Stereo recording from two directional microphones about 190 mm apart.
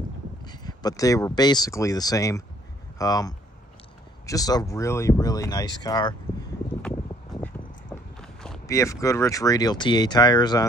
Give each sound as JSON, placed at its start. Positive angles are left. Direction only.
{"t": 0.5, "sound": "speech", "side_deg": 20}
{"t": 6.8, "sound": "a sound", "side_deg": 5}
{"t": 8.6, "sound": "speech", "side_deg": 15}